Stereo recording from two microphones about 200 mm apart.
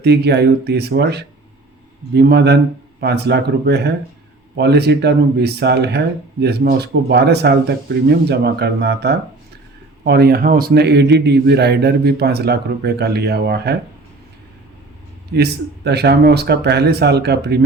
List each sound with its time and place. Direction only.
0.0 s a man's voice: 55° right (ahead or behind)
15.3 s a man's voice: 55° right (ahead or behind)